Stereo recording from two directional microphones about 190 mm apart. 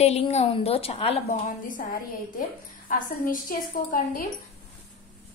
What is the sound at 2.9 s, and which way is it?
A woman's voice, 45° left (ahead or behind).